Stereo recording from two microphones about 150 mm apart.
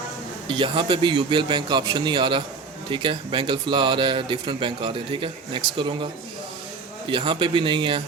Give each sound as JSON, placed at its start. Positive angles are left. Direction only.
{"t": 0.4, "sound": "speech", "side_deg": -35}
{"t": 7.1, "sound": "speech", "side_deg": -35}